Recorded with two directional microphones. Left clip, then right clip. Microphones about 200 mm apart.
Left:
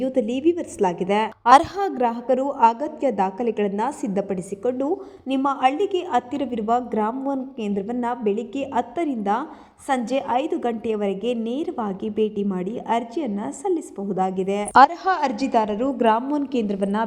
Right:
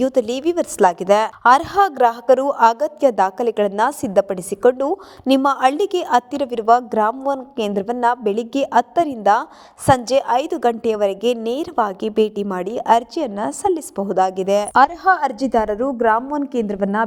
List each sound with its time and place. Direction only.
0.0 s a woman's voice: 65° right (ahead or behind)
1.5 s a woman's voice: centre (ahead or behind)
2.0 s a woman's voice: 55° right (ahead or behind)
15.0 s a woman's voice: 45° right (ahead or behind)